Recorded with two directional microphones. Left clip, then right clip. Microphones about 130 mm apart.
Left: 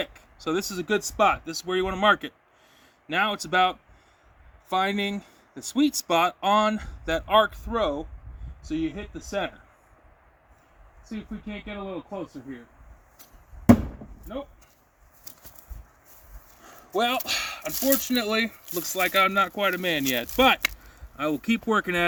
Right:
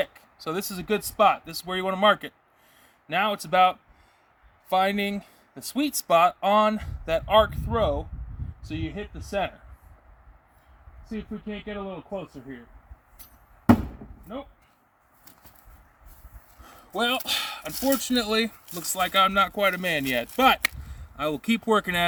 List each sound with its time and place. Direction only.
0.0 s speech: 40° right (ahead or behind)
11.1 s speech: 45° right (ahead or behind)
16.6 s a sound: 20° right (ahead or behind)
18.1 s speech: 25° right (ahead or behind)